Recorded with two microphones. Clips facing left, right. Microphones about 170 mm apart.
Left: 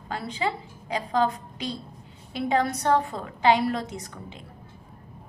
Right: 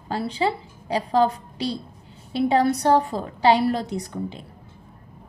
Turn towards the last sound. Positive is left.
turn(degrees=-35)  # may be behind; listen again after turning